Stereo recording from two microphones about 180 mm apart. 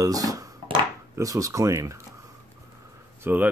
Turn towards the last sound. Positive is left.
turn(degrees=-10)  # may be behind; listen again after turning